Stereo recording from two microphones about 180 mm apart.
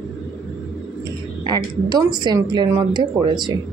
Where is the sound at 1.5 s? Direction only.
20° right (ahead or behind).